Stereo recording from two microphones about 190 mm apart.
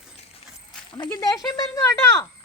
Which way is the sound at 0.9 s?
20° left (ahead or behind).